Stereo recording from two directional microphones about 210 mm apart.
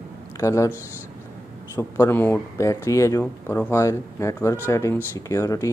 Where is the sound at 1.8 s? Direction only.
10° left (ahead or behind).